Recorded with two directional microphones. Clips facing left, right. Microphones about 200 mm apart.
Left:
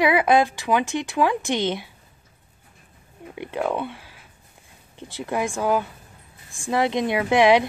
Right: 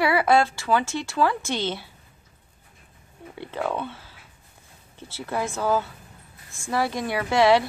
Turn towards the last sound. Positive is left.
turn(degrees=15)  # may be behind; listen again after turning